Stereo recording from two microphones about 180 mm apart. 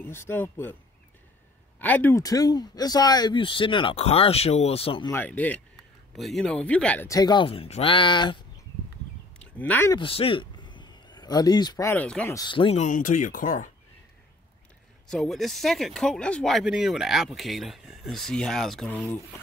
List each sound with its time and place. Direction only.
0.0 s speech: 10° left (ahead or behind)
1.8 s speech: 10° left (ahead or behind); by 5.1 s 30° left (ahead or behind)
5.1 s speech: 10° left (ahead or behind)
7.1 s speech: 20° left (ahead or behind)
9.4 s speech: 10° left (ahead or behind)
9.9 s a sound: 30° left (ahead or behind)
11.9 s speech: 5° left (ahead or behind)
12.4 s speech: 25° left (ahead or behind)
12.8 s speech: 45° left (ahead or behind)
15.0 s speech: centre (ahead or behind)